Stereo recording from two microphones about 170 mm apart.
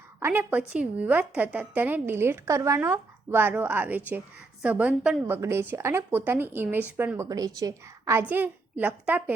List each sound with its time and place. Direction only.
0.2 s a woman's voice: 10° right (ahead or behind)